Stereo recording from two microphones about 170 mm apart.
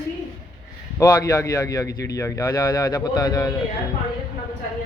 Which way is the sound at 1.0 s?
20° left (ahead or behind).